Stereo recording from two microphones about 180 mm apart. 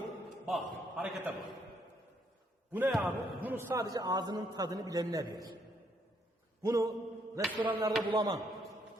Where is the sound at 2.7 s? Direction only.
10° right (ahead or behind).